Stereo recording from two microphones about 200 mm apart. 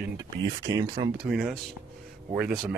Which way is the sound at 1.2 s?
5° right (ahead or behind).